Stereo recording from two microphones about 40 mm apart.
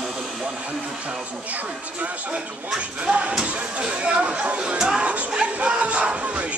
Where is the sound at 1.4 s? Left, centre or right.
Right.